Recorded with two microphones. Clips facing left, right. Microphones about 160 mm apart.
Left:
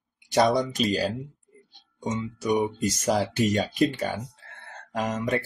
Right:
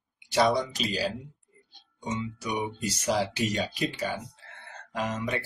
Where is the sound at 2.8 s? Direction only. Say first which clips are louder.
Left 3 dB; 45° left (ahead or behind).